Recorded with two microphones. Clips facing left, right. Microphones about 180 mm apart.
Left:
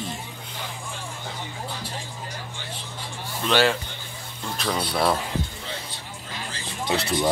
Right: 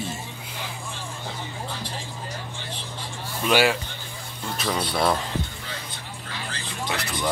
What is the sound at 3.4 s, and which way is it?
Speech, 10° right (ahead or behind).